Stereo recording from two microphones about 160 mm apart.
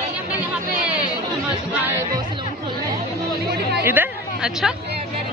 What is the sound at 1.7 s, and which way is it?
Music, 10° right (ahead or behind).